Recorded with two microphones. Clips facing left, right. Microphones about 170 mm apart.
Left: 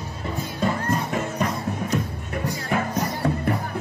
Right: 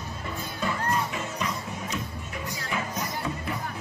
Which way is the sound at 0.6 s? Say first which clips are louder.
Left 4 dB; 45° left (ahead or behind).